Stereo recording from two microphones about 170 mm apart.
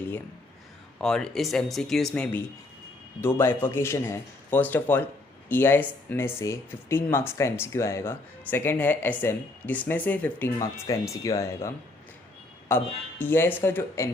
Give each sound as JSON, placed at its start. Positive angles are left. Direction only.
{"t": 1.0, "sound": "speech", "side_deg": 5}